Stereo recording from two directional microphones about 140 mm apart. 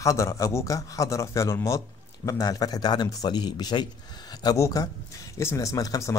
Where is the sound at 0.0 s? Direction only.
20° left (ahead or behind).